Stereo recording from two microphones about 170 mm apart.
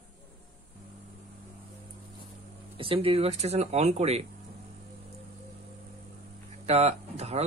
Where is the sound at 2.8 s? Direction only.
35° right (ahead or behind).